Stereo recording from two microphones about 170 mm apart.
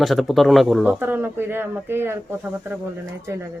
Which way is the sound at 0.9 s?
10° right (ahead or behind).